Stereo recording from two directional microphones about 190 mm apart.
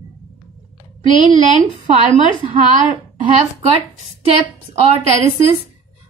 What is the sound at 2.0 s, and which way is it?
A woman's voice, 35° right (ahead or behind).